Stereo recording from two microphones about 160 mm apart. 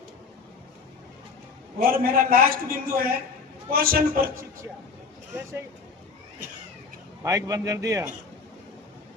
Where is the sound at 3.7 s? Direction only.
65° right (ahead or behind).